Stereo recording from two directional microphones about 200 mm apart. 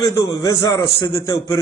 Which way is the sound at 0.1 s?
15° left (ahead or behind).